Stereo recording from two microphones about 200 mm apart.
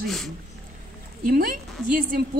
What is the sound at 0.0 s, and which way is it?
Speech, centre (ahead or behind).